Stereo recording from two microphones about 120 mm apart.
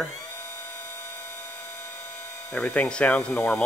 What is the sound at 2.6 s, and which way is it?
Speech, 10° left (ahead or behind).